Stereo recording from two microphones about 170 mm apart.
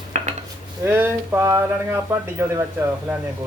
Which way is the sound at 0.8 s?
15° right (ahead or behind).